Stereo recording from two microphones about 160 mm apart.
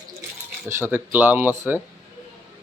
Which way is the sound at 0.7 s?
15° right (ahead or behind).